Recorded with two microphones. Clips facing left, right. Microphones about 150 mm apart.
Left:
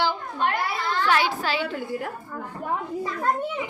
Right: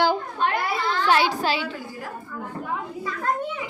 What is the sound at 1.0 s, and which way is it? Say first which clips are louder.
Child singing: right 3 dB; 25° right (ahead or behind).